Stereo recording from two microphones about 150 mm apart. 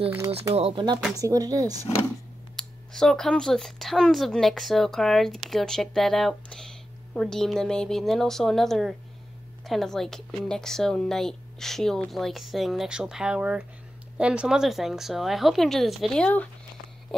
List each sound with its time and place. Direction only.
0.6 s speech: 35° right (ahead or behind)
1.1 s speech: 25° right (ahead or behind)
2.5 s speech: 5° left (ahead or behind)